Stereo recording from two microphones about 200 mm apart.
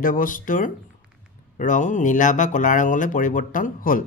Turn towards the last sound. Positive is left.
turn(degrees=45)  # may be behind; listen again after turning